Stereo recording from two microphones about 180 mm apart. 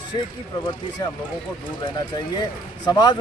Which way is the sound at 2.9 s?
25° left (ahead or behind).